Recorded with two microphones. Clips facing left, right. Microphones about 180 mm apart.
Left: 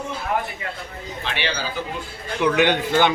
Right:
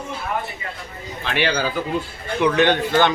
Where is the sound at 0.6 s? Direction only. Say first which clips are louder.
Left 2 dB; 70° left (ahead or behind).